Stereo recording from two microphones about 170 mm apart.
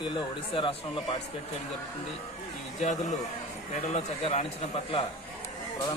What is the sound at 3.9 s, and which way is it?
Speech, 35° left (ahead or behind).